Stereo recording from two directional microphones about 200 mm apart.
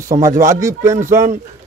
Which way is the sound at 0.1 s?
15° right (ahead or behind).